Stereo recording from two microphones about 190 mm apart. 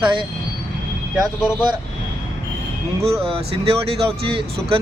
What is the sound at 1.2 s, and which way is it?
Speech, centre (ahead or behind).